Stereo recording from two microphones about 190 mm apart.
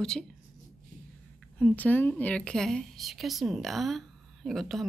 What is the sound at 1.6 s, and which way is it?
A woman's voice, 10° left (ahead or behind).